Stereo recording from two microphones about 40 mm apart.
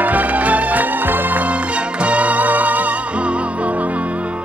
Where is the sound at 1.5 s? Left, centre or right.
Right.